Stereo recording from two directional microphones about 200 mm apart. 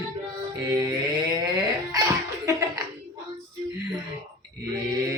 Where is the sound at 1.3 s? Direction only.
20° right (ahead or behind).